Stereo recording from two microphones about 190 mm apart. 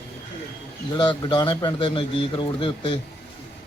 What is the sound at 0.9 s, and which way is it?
A man's voice, 25° left (ahead or behind).